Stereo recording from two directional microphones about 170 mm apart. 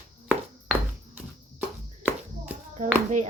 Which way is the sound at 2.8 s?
50° right (ahead or behind).